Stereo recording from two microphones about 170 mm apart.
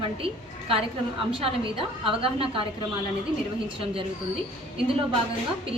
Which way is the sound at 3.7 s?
30° right (ahead or behind).